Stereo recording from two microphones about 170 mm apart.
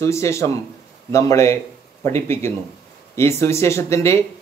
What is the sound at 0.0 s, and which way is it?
Speech, 15° left (ahead or behind).